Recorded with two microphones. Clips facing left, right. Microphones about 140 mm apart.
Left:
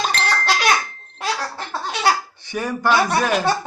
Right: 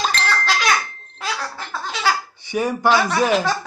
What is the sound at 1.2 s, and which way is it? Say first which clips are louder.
Music: left 2 dB; 35° left (ahead or behind).